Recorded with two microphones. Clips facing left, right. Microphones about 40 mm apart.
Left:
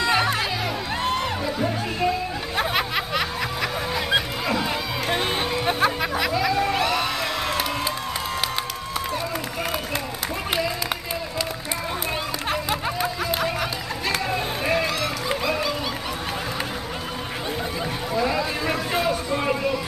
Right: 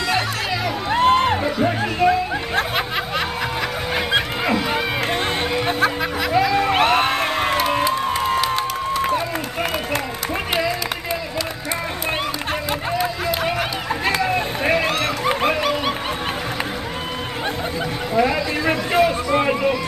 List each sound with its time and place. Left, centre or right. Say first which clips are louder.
0.0 s music: even; centre
0.9 s music: right 11 dB; right
2.5 s a sound: even; centre
3.9 s music: right 4 dB; right
5.8 s music: right 2 dB; centre
6.5 s music: right 5 dB; right
8.9 s a sound: right 7 dB; right
13.3 s run: right 3 dB; right
14.2 s dog: right 5 dB; right
18.1 s a sound: right 5 dB; right